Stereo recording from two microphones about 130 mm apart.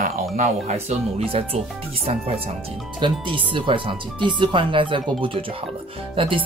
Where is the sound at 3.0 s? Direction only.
40° right (ahead or behind).